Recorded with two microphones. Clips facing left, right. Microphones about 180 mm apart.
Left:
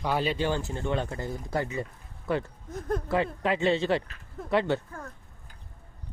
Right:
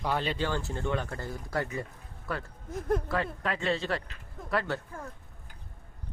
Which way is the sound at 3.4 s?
25° left (ahead or behind).